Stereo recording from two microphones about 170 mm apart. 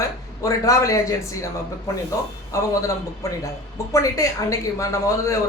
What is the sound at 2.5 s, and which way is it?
Speech, 20° left (ahead or behind).